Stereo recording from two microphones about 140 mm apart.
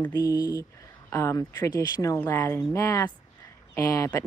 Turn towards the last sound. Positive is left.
turn(degrees=25)  # may be behind; listen again after turning